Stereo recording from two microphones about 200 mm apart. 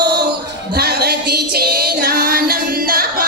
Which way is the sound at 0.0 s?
55° right (ahead or behind).